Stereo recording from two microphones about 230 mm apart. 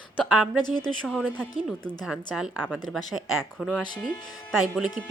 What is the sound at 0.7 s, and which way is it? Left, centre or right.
Speech, centre.